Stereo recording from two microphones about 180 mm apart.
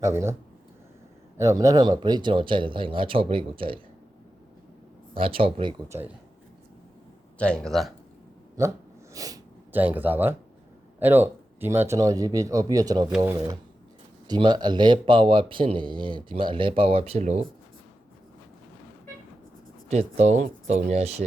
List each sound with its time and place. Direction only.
0.0 s speech: 15° right (ahead or behind)
1.4 s speech: 20° right (ahead or behind)
5.1 s speech: 30° right (ahead or behind)
5.9 s speech: 10° right (ahead or behind)
7.3 s speech: 5° left (ahead or behind)
8.6 s speech: 20° right (ahead or behind)
13.1 s speech: 5° right (ahead or behind)
13.3 s speech: 20° right (ahead or behind)
19.9 s speech: 40° right (ahead or behind)